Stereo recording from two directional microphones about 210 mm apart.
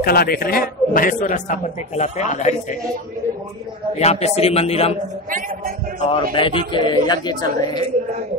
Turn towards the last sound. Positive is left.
turn(degrees=20)  # may be behind; listen again after turning